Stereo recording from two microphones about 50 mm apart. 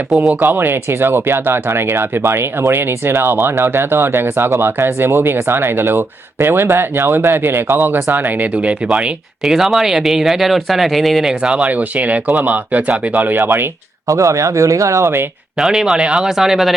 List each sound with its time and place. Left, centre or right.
0.3 s speech: right
9.4 s speech: centre
11.7 s speech: right
14.1 s speech: right
15.5 s speech: centre